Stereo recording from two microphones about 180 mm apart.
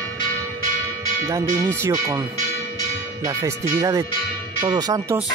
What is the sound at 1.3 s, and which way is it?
Speech, 15° right (ahead or behind).